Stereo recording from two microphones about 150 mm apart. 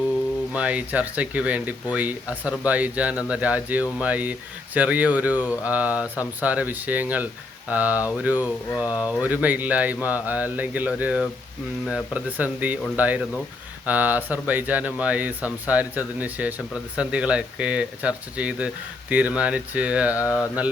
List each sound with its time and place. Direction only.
0.5 s speech: 10° right (ahead or behind)
20.1 s mantra: 20° left (ahead or behind)